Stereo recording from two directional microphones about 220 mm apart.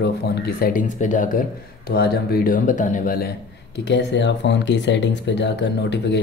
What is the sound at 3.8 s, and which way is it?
Speech, 50° left (ahead or behind).